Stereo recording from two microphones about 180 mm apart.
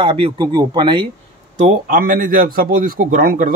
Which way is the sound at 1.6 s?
45° right (ahead or behind).